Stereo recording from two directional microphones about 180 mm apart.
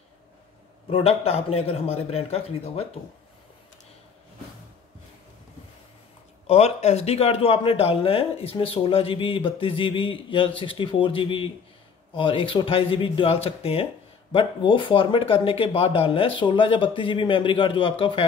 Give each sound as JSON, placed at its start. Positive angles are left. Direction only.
{"t": 0.8, "sound": "a man's voice", "side_deg": 30}
{"t": 6.4, "sound": "a man's voice", "side_deg": 35}